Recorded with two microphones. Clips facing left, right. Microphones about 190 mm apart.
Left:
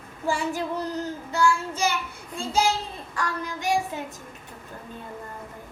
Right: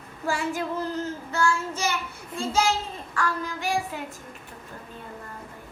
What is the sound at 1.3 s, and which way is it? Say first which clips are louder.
Child singing: left 3 dB; 15° left (ahead or behind).